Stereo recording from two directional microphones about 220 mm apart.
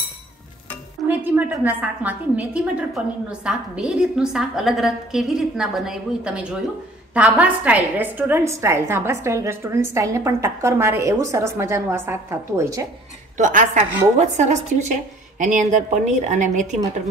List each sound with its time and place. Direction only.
1.0 s a woman's voice: 10° right (ahead or behind)
13.4 s a woman's voice: 35° right (ahead or behind)